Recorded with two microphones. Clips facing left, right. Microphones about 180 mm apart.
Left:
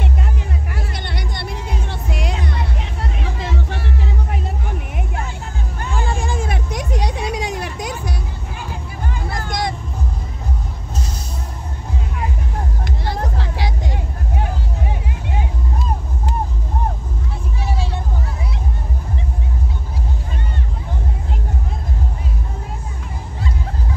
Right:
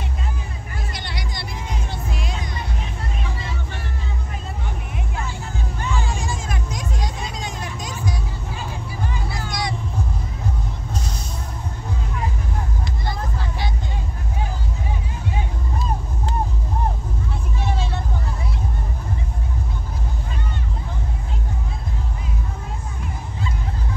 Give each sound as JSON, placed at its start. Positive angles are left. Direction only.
{"t": 0.9, "sound": "music", "side_deg": 55}
{"t": 5.8, "sound": "a sound", "side_deg": 55}
{"t": 9.3, "sound": "vehicle", "side_deg": 50}
{"t": 13.0, "sound": "music", "side_deg": 75}
{"t": 17.6, "sound": "vehicle", "side_deg": 10}